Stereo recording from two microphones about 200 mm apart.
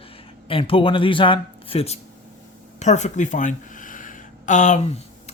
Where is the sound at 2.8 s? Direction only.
35° left (ahead or behind).